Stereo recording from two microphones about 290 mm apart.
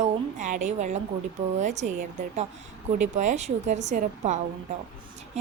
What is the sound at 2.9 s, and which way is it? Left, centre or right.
A woman's voice, right.